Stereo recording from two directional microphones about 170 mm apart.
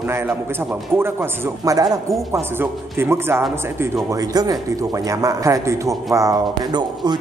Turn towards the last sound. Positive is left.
turn(degrees=-25)  # may be behind; listen again after turning